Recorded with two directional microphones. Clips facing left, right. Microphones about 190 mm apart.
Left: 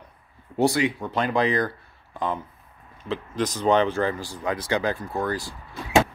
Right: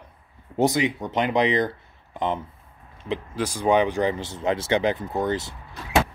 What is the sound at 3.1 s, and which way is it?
Speech, 10° right (ahead or behind).